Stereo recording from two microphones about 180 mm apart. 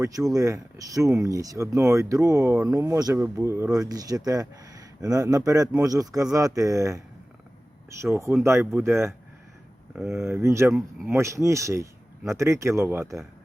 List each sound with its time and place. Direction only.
0.0 s speech: 20° right (ahead or behind)
8.0 s speech: 15° right (ahead or behind)
10.7 s speech: centre (ahead or behind)
11.1 s speech: 15° right (ahead or behind)